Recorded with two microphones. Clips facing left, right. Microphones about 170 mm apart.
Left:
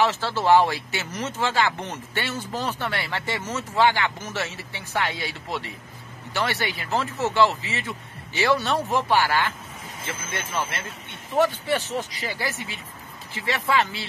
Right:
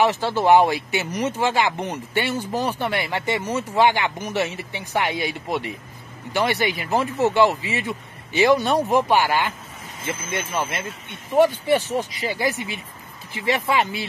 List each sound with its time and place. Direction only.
0.0 s speech: 15° right (ahead or behind)